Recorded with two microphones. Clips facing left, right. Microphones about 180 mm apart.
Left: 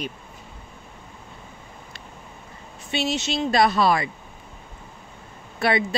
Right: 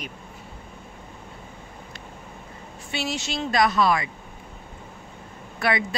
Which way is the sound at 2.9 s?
20° left (ahead or behind).